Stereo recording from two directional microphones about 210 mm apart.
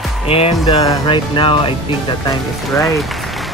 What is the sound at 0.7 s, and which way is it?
Music, 20° left (ahead or behind).